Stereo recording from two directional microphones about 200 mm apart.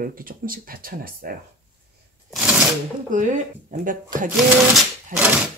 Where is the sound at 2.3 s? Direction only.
5° right (ahead or behind).